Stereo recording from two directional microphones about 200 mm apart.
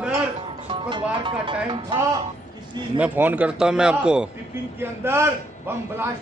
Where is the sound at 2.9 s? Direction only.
10° right (ahead or behind).